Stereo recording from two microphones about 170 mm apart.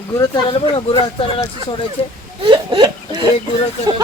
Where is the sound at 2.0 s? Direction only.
35° left (ahead or behind).